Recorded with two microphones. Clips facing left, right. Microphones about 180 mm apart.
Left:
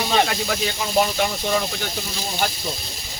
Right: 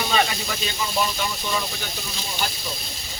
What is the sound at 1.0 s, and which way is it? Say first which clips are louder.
Speech: left 7 dB; 60° left (ahead or behind).